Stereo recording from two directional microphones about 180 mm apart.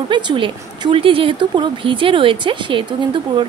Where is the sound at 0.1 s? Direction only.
25° right (ahead or behind).